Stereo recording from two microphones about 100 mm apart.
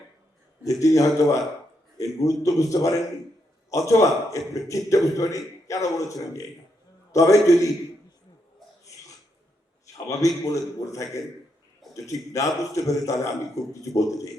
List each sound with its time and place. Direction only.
0.6 s a man's voice: 35° left (ahead or behind)
9.8 s a man's voice: 35° left (ahead or behind)
11.8 s a sound: centre (ahead or behind)
12.3 s a man's voice: 35° left (ahead or behind)